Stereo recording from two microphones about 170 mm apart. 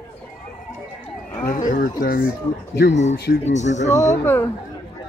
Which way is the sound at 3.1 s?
70° left (ahead or behind).